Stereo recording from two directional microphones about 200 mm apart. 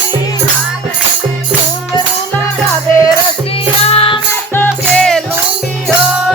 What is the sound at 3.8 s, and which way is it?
Music, 30° left (ahead or behind).